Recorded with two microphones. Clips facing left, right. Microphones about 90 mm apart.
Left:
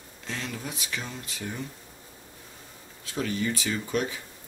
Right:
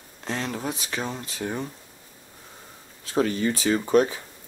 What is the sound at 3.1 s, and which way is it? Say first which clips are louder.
Speech: right 6 dB; 45° right (ahead or behind).